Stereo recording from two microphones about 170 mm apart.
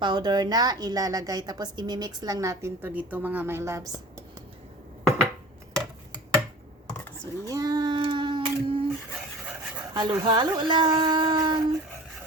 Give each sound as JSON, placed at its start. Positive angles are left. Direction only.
{"t": 0.0, "sound": "a woman's voice", "side_deg": -25}
{"t": 7.4, "sound": "a sound", "side_deg": -20}
{"t": 9.9, "sound": "speech", "side_deg": -25}